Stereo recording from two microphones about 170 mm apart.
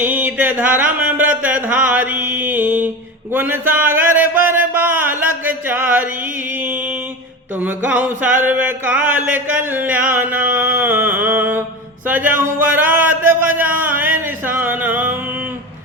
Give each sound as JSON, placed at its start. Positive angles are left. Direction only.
{"t": 0.0, "sound": "a sound", "side_deg": -10}
{"t": 5.5, "sound": "music", "side_deg": -10}
{"t": 7.6, "sound": "music", "side_deg": -10}
{"t": 12.0, "sound": "speech", "side_deg": -10}